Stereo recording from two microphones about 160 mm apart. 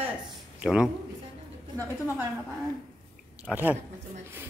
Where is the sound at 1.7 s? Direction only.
25° right (ahead or behind).